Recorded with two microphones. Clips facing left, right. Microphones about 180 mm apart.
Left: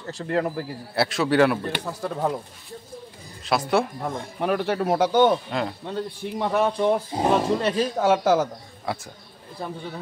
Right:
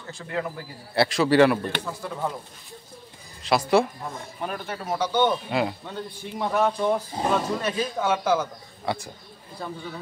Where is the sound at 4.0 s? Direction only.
65° left (ahead or behind); by 5.3 s 45° left (ahead or behind).